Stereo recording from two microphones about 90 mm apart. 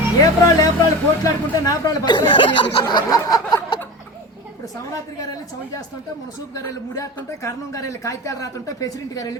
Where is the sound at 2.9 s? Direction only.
50° left (ahead or behind).